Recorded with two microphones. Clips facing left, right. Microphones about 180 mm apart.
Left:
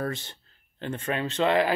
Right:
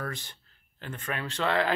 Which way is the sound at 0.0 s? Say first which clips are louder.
Left 6 dB; 25° left (ahead or behind).